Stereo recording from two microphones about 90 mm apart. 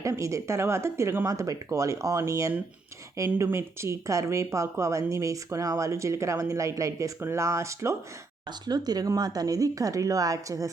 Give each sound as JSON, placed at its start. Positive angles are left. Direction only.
{"t": 0.0, "sound": "speech", "side_deg": -35}
{"t": 8.6, "sound": "speech", "side_deg": -50}